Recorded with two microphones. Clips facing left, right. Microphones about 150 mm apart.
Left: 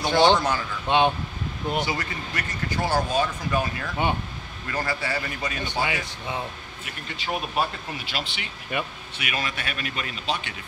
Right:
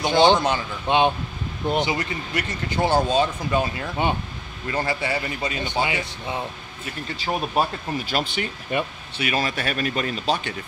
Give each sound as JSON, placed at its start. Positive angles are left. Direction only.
{"t": 0.0, "sound": "speech", "side_deg": -20}
{"t": 7.6, "sound": "speech", "side_deg": -40}
{"t": 8.7, "sound": "speech", "side_deg": -35}